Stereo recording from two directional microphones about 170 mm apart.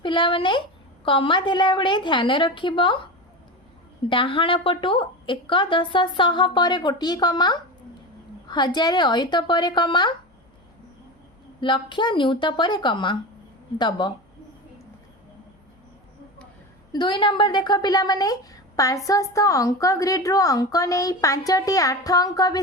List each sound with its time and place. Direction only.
0.0 s a woman's voice: 30° left (ahead or behind)
4.1 s a woman's voice: 30° left (ahead or behind)
11.6 s a woman's voice: 30° left (ahead or behind)
16.9 s a woman's voice: 25° left (ahead or behind)